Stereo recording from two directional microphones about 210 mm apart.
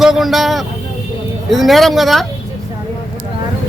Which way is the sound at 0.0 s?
Centre (ahead or behind).